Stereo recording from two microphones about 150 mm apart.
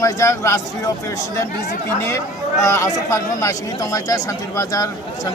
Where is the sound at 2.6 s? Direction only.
20° left (ahead or behind).